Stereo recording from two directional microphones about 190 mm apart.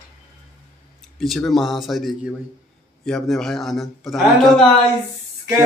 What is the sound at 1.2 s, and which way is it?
A man's voice, centre (ahead or behind).